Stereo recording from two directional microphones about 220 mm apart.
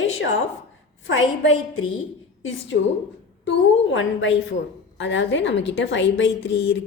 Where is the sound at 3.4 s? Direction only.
60° left (ahead or behind).